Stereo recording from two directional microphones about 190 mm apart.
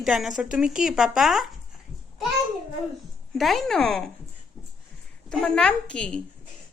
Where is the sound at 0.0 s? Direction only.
Centre (ahead or behind).